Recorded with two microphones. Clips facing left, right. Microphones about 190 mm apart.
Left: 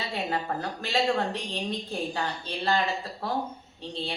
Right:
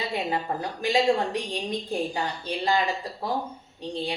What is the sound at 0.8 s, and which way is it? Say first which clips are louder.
Speech: right 5 dB; 15° right (ahead or behind).